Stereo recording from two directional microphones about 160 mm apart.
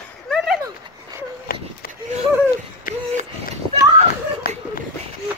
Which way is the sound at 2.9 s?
60° left (ahead or behind).